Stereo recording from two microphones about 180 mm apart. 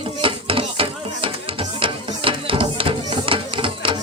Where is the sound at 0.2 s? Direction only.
30° right (ahead or behind).